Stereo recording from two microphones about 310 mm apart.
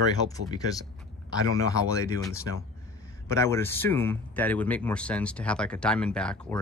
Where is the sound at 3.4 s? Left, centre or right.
Centre.